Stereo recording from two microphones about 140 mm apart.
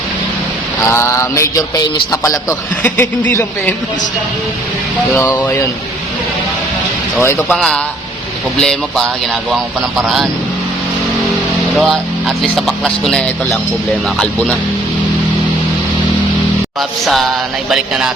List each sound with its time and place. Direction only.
0.9 s mantra: 20° left (ahead or behind)
2.2 s a man's voice: 20° left (ahead or behind)
5.1 s a man's voice: 15° left (ahead or behind)
7.5 s speech: centre (ahead or behind)
12.4 s speech: centre (ahead or behind)